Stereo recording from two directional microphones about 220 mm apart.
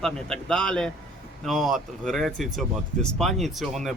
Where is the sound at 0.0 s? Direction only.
5° left (ahead or behind).